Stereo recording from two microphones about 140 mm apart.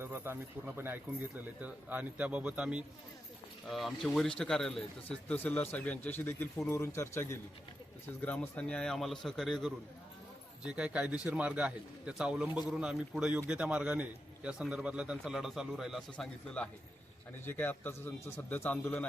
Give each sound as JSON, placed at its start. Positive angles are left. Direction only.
{"t": 0.0, "sound": "speech", "side_deg": -15}
{"t": 1.6, "sound": "a man's voice", "side_deg": -10}